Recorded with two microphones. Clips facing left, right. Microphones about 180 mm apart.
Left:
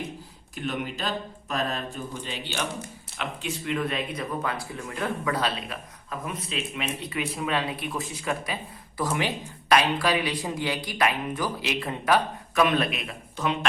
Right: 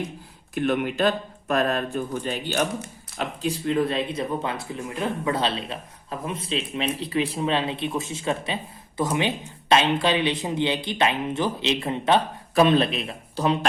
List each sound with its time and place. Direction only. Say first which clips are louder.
0.5 s speech: right 8 dB; 55° right (ahead or behind)
3.2 s speech: right 5 dB; 35° right (ahead or behind)